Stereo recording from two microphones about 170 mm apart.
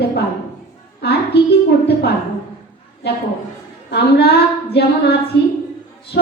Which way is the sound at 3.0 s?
75° left (ahead or behind).